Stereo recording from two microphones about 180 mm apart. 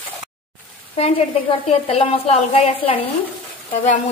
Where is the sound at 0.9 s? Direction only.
35° left (ahead or behind).